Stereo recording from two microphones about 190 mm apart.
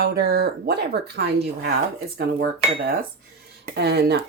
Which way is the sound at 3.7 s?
60° right (ahead or behind).